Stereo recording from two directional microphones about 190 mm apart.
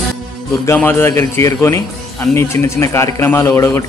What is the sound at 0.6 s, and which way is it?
A man's voice, 10° left (ahead or behind).